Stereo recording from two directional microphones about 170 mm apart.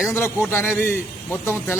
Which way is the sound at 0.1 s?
15° left (ahead or behind).